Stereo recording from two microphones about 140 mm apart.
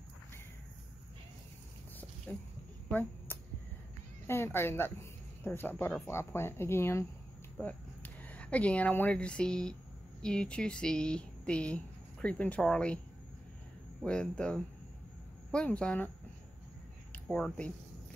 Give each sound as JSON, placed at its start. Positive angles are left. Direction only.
{"t": 2.9, "sound": "a sound", "side_deg": 10}
{"t": 4.3, "sound": "speech", "side_deg": 15}
{"t": 14.0, "sound": "speech", "side_deg": 5}
{"t": 17.1, "sound": "speech", "side_deg": 10}